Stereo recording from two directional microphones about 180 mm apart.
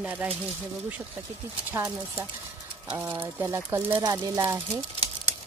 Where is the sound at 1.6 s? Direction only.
15° right (ahead or behind).